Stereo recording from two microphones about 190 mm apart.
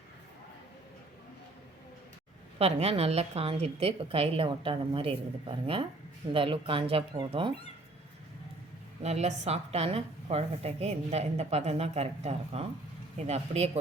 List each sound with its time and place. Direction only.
2.6 s a woman's voice: 30° right (ahead or behind)
9.0 s a woman's voice: 35° right (ahead or behind)